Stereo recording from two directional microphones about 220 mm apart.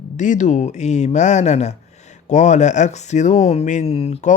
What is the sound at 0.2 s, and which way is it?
Speech, 35° left (ahead or behind).